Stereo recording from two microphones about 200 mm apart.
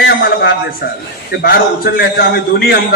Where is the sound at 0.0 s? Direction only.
60° left (ahead or behind).